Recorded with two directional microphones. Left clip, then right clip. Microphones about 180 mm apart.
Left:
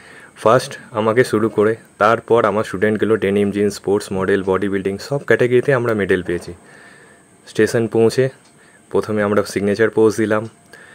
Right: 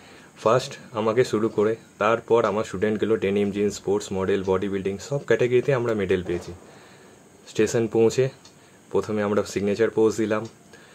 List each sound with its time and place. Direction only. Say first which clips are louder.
0.4 s speech: left 7 dB; 40° left (ahead or behind)